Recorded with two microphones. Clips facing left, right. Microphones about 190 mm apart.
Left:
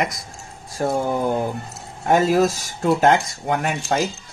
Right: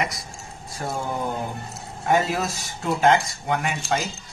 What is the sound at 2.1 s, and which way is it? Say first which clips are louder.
Speech: left 6 dB; 45° left (ahead or behind).